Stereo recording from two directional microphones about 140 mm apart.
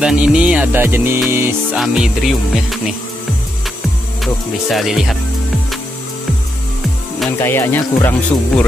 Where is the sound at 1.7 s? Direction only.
5° right (ahead or behind).